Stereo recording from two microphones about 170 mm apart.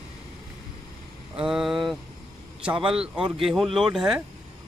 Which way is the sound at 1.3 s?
5° right (ahead or behind).